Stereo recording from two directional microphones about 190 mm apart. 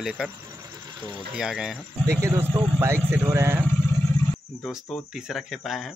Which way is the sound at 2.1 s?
15° right (ahead or behind).